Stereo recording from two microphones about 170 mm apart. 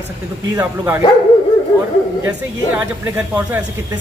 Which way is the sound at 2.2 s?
5° right (ahead or behind).